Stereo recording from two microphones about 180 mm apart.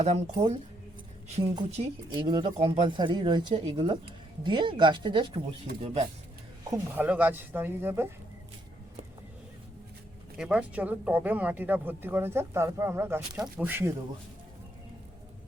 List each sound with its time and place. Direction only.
0.0 s speech: 35° right (ahead or behind)
6.7 s speech: 15° right (ahead or behind)
10.3 s speech: 5° right (ahead or behind)